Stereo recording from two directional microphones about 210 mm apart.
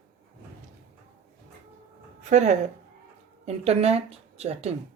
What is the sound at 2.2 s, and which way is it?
Speech, 35° right (ahead or behind).